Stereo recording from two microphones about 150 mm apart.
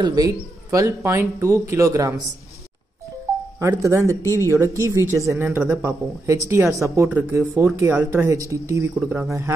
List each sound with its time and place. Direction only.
0.0 s speech: 25° right (ahead or behind)
3.5 s speech: 20° right (ahead or behind)